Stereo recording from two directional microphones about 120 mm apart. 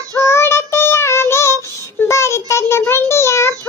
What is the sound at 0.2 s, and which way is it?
Child singing, 20° left (ahead or behind).